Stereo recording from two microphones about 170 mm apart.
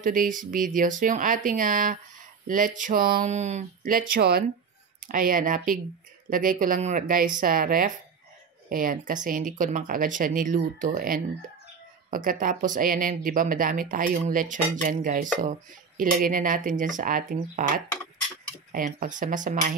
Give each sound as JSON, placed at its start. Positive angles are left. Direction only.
{"t": 0.0, "sound": "speech", "side_deg": -50}
{"t": 4.0, "sound": "speech", "side_deg": -65}